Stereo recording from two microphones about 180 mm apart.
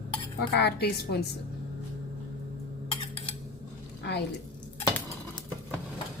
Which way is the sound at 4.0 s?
70° left (ahead or behind).